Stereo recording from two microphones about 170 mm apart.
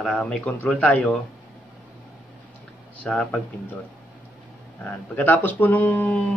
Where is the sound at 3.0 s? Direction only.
5° left (ahead or behind).